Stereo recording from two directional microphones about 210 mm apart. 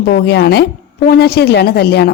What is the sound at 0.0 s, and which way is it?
Speech, 50° left (ahead or behind).